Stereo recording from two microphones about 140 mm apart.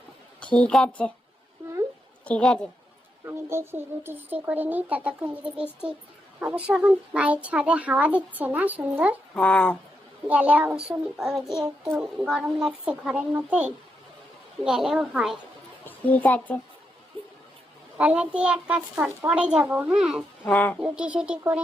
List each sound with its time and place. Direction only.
0.4 s a woman's voice: 5° left (ahead or behind)
2.2 s a woman's voice: 5° left (ahead or behind)
3.2 s child singing: 20° right (ahead or behind)
9.3 s a woman's voice: 5° left (ahead or behind)
10.2 s child singing: 10° right (ahead or behind)
14.6 s a woman's voice: 5° right (ahead or behind)
15.9 s speech: 10° left (ahead or behind)
17.2 s a sound: 35° right (ahead or behind)
17.9 s child singing: 10° right (ahead or behind)
20.4 s a woman's voice: 10° left (ahead or behind)
20.7 s child singing: 5° right (ahead or behind)